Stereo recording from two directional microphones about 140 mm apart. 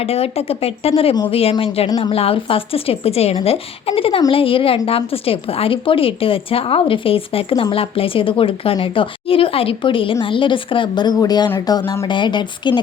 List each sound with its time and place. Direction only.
0.0 s a woman's voice: 45° left (ahead or behind)